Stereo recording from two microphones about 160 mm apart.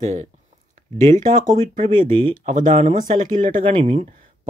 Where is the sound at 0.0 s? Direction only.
50° right (ahead or behind).